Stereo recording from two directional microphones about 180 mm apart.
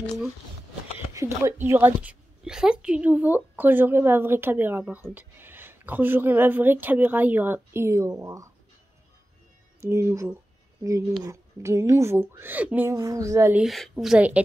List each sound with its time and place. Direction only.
1.1 s speech: 15° right (ahead or behind)
9.8 s speech: 15° right (ahead or behind)
13.6 s a woman's voice: centre (ahead or behind)